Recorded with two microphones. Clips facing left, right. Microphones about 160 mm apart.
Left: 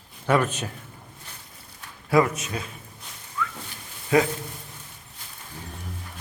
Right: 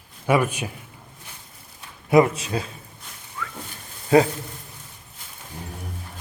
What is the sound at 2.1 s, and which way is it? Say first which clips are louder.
Speech: right 4 dB; 25° right (ahead or behind).